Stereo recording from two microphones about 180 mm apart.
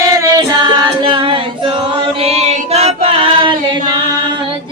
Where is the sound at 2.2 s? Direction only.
35° right (ahead or behind).